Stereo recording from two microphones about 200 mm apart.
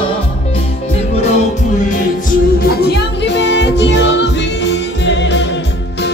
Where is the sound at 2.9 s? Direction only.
60° left (ahead or behind).